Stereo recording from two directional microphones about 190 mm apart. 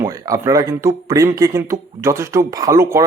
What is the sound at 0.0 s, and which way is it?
Speech, 20° right (ahead or behind).